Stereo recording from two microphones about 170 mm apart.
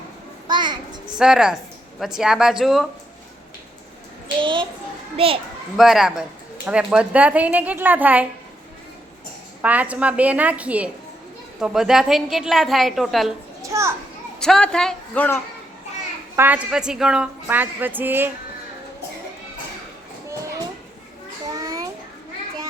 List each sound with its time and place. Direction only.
0.4 s a sound: 25° right (ahead or behind)
1.2 s a woman's voice: 5° right (ahead or behind)
4.4 s a woman's voice: 30° right (ahead or behind)
5.7 s a woman's voice: centre (ahead or behind)
9.6 s a woman's voice: 10° right (ahead or behind)
13.6 s children playing: 15° right (ahead or behind)
14.3 s a woman's voice: 5° left (ahead or behind)
16.3 s speech: 10° right (ahead or behind)
21.5 s a sound: 20° right (ahead or behind)